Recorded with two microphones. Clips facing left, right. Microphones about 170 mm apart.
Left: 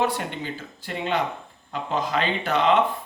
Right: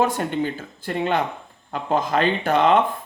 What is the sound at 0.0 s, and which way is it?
Speech, 45° right (ahead or behind).